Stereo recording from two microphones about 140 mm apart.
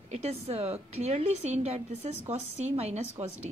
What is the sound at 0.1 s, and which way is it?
A woman's voice, 50° right (ahead or behind).